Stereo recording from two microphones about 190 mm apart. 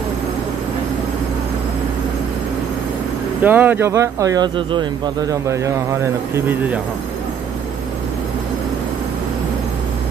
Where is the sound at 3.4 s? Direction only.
10° right (ahead or behind).